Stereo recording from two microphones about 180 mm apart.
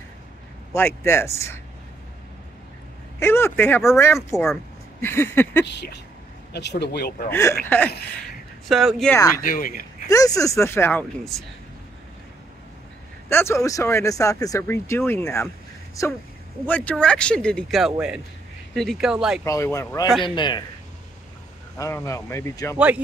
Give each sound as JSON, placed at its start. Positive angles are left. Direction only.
{"t": 0.7, "sound": "speech", "side_deg": 15}
{"t": 3.2, "sound": "speech", "side_deg": 15}
{"t": 5.7, "sound": "speech", "side_deg": 70}
{"t": 7.2, "sound": "speech", "side_deg": 15}
{"t": 8.6, "sound": "speech", "side_deg": 0}
{"t": 9.4, "sound": "speech", "side_deg": 50}
{"t": 10.0, "sound": "speech", "side_deg": 20}
{"t": 13.3, "sound": "speech", "side_deg": 15}
{"t": 19.4, "sound": "a man's voice", "side_deg": 15}
{"t": 21.7, "sound": "speech", "side_deg": 15}
{"t": 22.8, "sound": "speech", "side_deg": -5}